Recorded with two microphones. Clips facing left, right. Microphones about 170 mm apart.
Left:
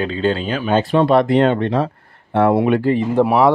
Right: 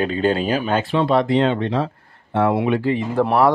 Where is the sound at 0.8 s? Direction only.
45° left (ahead or behind).